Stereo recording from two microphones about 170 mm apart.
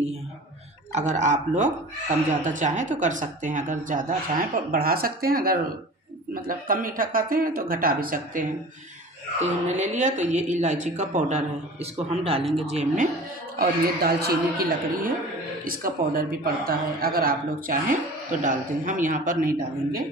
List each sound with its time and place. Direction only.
0.9 s a woman's voice: 45° right (ahead or behind)
9.4 s a woman's voice: 40° right (ahead or behind)
13.6 s a woman's voice: 65° right (ahead or behind)